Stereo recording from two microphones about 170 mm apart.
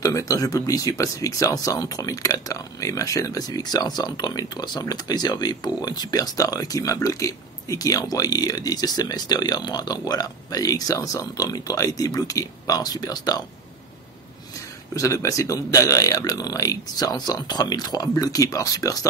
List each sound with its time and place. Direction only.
0.0 s speech: 20° left (ahead or behind)
15.0 s speech: 20° left (ahead or behind)